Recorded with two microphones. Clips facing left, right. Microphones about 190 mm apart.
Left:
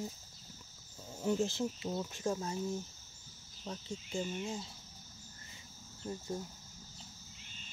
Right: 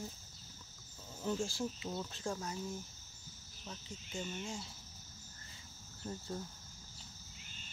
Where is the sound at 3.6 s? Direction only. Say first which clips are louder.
Left 7 dB; 35° left (ahead or behind).